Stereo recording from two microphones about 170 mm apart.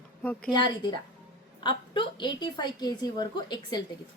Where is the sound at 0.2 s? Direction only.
10° left (ahead or behind).